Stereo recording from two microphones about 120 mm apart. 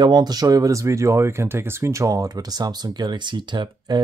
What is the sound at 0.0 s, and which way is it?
Speech, 35° right (ahead or behind).